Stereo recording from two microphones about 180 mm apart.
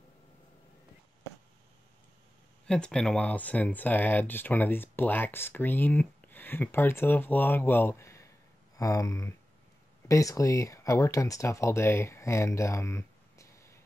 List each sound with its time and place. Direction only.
2.6 s speech: 5° left (ahead or behind)